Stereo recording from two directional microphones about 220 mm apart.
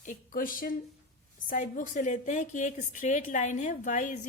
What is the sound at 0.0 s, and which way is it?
A woman's voice, 35° left (ahead or behind).